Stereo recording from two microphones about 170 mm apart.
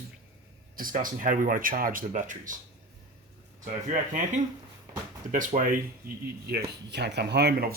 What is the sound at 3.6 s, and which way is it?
Speech, 50° right (ahead or behind).